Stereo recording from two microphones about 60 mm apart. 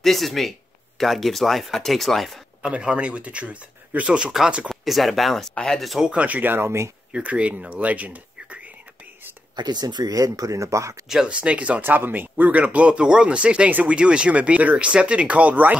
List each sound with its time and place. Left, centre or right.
0.0 s speech: centre
2.6 s speech: centre
4.6 s speech: centre
5.5 s speech: centre
5.8 s speech: centre
6.0 s speech: right
7.1 s speech: centre
10.0 s speech: right
11.1 s speech: centre
11.4 s speech: right
11.8 s speech: right